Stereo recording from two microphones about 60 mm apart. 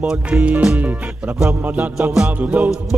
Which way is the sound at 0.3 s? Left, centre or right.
Right.